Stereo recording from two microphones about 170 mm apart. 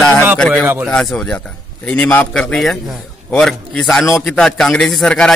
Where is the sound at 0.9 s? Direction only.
5° left (ahead or behind).